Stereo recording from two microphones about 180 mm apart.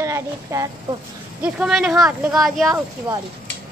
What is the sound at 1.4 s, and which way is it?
Speech, 5° right (ahead or behind).